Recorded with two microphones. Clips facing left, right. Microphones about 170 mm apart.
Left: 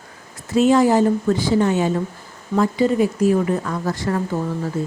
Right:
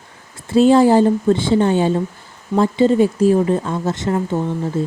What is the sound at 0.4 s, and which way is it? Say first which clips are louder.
Speech: right 4 dB; 30° right (ahead or behind).